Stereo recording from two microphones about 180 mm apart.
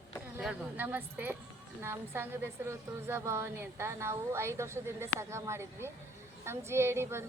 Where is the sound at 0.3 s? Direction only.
5° right (ahead or behind).